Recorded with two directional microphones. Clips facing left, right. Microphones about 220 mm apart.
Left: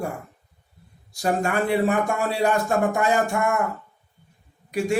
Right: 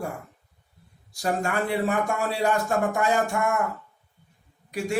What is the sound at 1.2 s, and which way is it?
A man's voice, 15° left (ahead or behind).